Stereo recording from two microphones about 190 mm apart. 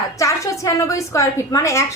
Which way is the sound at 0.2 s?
15° left (ahead or behind).